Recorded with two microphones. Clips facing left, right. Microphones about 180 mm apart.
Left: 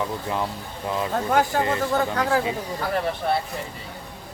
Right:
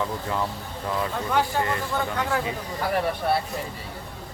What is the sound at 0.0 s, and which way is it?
Speech, 20° left (ahead or behind).